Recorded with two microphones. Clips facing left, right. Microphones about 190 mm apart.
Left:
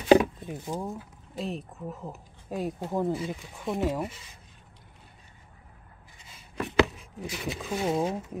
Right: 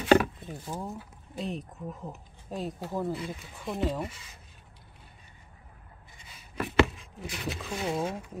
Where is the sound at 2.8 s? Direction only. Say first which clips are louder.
Left 4 dB; 20° left (ahead or behind).